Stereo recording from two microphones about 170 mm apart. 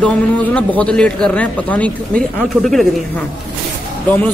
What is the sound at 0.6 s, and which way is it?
Speech, 5° left (ahead or behind).